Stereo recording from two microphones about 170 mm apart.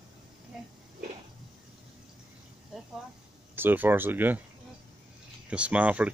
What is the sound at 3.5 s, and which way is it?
Speech, 10° right (ahead or behind).